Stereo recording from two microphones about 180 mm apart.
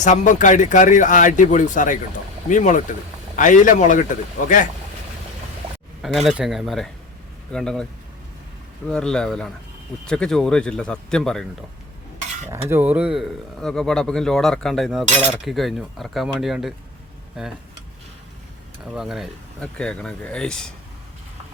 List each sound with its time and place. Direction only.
0.0 s speech: 45° left (ahead or behind)
6.0 s speech: centre (ahead or behind)
8.9 s speech: 5° left (ahead or behind)
12.5 s speech: 15° right (ahead or behind)
18.9 s speech: centre (ahead or behind)